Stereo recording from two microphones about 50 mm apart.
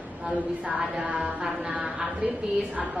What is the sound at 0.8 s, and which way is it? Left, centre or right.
Speech, centre.